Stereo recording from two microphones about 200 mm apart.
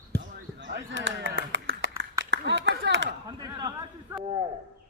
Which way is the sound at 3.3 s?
20° right (ahead or behind).